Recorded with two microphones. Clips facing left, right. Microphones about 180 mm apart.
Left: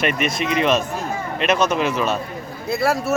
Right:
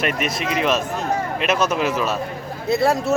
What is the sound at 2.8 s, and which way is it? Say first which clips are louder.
Speech: even; 20° right (ahead or behind).